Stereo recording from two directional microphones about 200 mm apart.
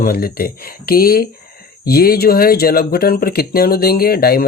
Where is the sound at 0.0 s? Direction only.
50° left (ahead or behind).